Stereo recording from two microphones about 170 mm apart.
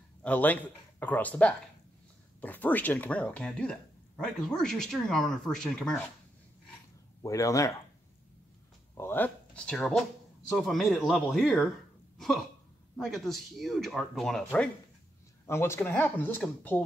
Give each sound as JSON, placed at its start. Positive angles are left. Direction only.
{"t": 0.2, "sound": "speech", "side_deg": 10}
{"t": 7.2, "sound": "speech", "side_deg": 20}
{"t": 8.9, "sound": "speech", "side_deg": 10}
{"t": 12.9, "sound": "speech", "side_deg": 0}
{"t": 15.4, "sound": "speech", "side_deg": 15}